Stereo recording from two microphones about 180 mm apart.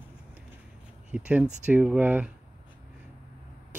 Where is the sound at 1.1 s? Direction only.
5° right (ahead or behind).